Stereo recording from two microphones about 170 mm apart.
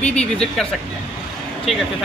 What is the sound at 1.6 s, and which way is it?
Speech, centre (ahead or behind).